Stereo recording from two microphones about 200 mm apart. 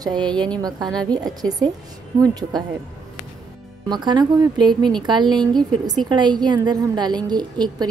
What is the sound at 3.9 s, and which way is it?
A woman's voice, 20° right (ahead or behind).